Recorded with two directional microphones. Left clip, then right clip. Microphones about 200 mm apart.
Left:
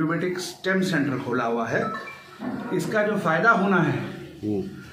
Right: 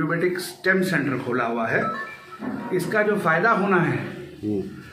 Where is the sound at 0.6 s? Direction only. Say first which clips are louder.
Right 3 dB; 20° right (ahead or behind).